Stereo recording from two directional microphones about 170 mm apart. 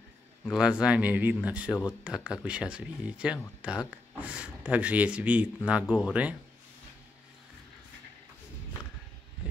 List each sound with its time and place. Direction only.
0.5 s speech: 5° right (ahead or behind)